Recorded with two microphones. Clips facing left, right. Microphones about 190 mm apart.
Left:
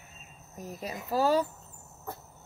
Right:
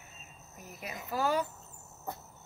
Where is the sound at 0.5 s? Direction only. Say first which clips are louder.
Left 6 dB; 35° left (ahead or behind).